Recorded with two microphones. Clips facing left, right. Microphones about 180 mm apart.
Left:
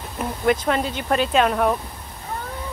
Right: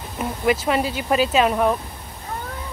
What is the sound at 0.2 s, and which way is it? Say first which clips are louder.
Speech: even; 5° right (ahead or behind).